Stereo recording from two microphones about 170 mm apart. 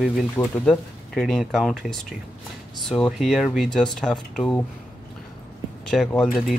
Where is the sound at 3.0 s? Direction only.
Centre (ahead or behind).